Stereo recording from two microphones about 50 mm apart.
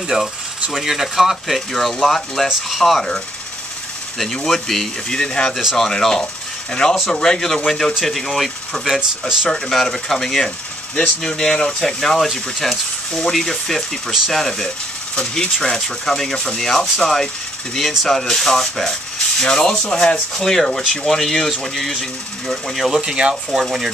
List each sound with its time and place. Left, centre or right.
0.7 s speech: centre
4.2 s speech: centre
23.0 s speech: centre